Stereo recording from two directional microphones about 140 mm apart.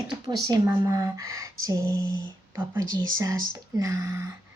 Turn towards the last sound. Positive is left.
turn(degrees=-20)  # may be behind; listen again after turning